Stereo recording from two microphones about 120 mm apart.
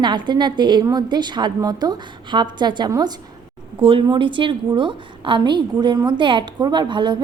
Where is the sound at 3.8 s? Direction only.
50° right (ahead or behind).